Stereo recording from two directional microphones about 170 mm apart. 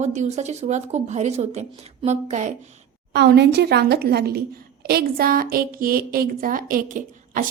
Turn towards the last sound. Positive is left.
turn(degrees=-50)  # may be behind; listen again after turning